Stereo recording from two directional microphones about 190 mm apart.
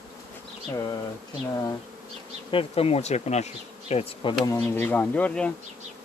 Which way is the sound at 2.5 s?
30° left (ahead or behind).